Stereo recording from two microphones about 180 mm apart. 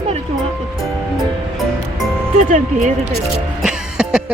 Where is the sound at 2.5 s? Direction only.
45° right (ahead or behind).